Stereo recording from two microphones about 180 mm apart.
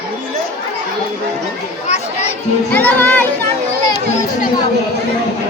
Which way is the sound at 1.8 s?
40° left (ahead or behind).